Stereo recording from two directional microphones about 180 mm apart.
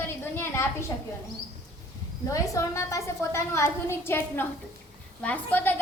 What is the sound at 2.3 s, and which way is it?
A woman's voice, 15° left (ahead or behind).